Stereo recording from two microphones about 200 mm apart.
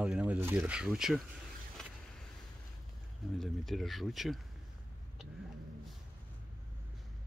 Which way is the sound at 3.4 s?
Centre (ahead or behind).